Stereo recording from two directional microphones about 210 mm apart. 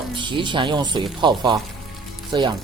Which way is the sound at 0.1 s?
25° right (ahead or behind).